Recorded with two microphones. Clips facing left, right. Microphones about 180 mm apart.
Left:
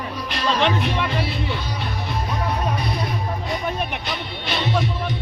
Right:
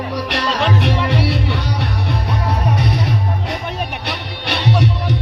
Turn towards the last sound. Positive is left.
turn(degrees=-70)  # may be behind; listen again after turning